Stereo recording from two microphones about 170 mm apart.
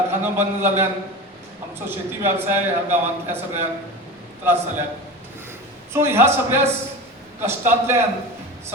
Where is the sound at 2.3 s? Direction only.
15° right (ahead or behind).